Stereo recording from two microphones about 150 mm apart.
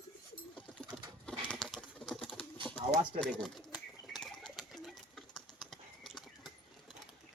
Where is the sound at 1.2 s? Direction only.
5° left (ahead or behind).